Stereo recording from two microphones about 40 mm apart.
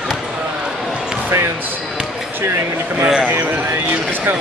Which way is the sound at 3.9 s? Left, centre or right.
Right.